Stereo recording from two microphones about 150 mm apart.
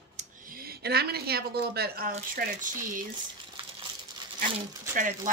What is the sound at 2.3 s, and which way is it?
Speech, 65° right (ahead or behind).